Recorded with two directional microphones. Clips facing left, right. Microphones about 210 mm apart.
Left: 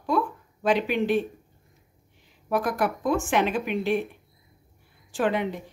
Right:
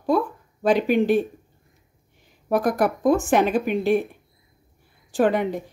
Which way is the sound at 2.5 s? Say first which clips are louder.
Right 5 dB; 40° right (ahead or behind).